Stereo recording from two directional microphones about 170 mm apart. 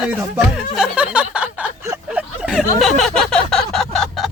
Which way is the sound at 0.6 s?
5° right (ahead or behind).